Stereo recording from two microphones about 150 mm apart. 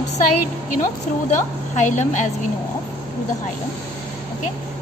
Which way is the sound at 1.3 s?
55° left (ahead or behind).